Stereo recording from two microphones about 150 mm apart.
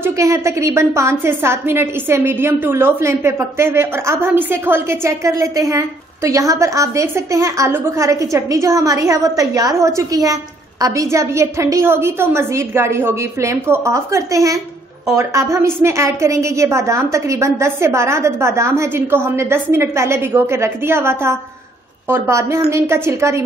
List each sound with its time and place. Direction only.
0.0 s a woman's voice: 20° right (ahead or behind)